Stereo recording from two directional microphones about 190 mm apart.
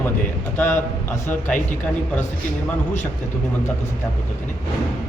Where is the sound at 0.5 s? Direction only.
10° left (ahead or behind).